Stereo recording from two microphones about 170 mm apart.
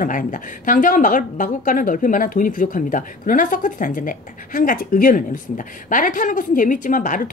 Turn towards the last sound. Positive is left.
turn(degrees=50)  # may be behind; listen again after turning